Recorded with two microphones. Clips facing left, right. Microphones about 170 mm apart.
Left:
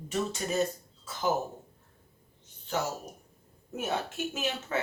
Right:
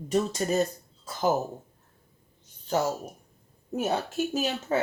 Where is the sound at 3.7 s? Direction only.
40° right (ahead or behind).